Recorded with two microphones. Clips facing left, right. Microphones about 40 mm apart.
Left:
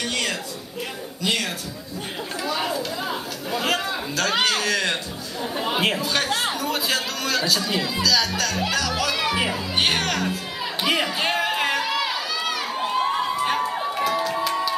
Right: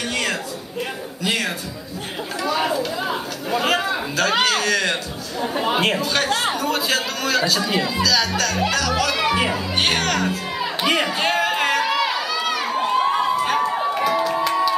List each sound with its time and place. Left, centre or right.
0.1 s a sound: centre
2.4 s chatter: centre
5.4 s speech: centre
5.8 s a man's voice: centre
8.6 s music: centre
13.6 s crowd: centre